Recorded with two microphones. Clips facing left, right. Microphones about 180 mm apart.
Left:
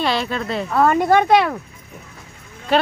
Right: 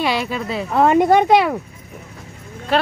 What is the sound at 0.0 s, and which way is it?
Speech, 10° right (ahead or behind).